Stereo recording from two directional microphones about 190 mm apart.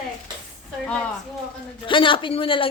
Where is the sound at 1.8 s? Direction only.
25° left (ahead or behind).